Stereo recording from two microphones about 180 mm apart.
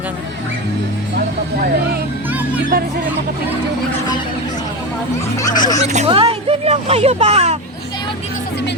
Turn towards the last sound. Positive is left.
turn(degrees=-35)  # may be behind; listen again after turning